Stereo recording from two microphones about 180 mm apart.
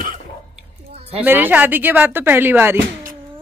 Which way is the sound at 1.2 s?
10° right (ahead or behind).